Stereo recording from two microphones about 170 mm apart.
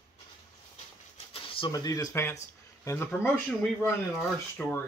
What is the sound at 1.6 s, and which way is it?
Speech, 20° left (ahead or behind).